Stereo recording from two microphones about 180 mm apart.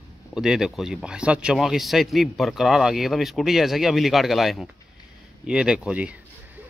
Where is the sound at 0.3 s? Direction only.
5° right (ahead or behind).